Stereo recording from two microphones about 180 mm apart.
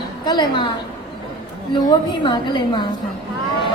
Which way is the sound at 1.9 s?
25° left (ahead or behind).